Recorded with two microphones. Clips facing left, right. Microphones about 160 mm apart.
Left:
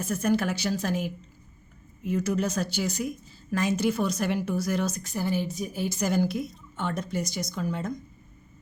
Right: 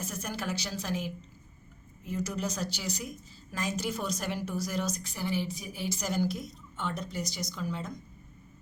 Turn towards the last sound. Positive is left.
turn(degrees=50)  # may be behind; listen again after turning